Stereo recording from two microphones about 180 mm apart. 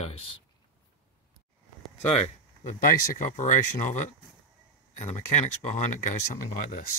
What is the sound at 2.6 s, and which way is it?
Speech, 45° left (ahead or behind).